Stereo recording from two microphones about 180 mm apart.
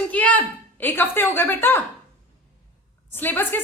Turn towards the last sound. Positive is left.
turn(degrees=10)  # may be behind; listen again after turning